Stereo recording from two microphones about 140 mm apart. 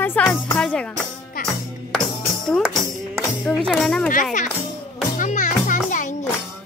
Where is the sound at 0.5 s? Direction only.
5° left (ahead or behind).